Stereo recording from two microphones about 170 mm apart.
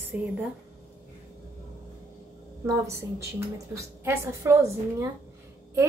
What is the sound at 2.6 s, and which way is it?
A woman's voice, 15° right (ahead or behind).